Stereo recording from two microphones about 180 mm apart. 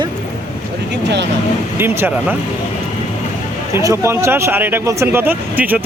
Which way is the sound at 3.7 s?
15° right (ahead or behind).